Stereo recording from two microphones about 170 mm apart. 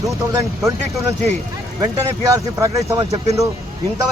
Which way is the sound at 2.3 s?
20° right (ahead or behind).